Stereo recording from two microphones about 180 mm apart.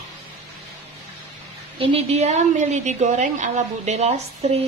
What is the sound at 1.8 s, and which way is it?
A woman's voice, 35° right (ahead or behind).